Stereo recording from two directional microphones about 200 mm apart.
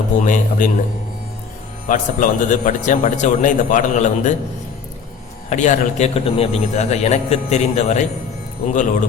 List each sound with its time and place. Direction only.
0.1 s a man's voice: 40° left (ahead or behind)
1.9 s a man's voice: 40° left (ahead or behind)
5.5 s a man's voice: 35° left (ahead or behind)